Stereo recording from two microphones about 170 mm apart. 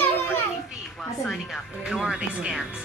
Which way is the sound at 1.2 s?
Centre (ahead or behind).